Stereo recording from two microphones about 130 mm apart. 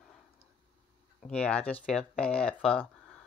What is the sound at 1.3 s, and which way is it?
Speech, 10° left (ahead or behind).